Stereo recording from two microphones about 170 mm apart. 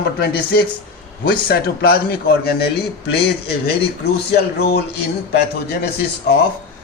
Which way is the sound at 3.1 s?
70° left (ahead or behind).